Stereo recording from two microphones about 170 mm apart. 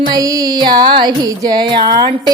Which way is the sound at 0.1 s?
20° right (ahead or behind).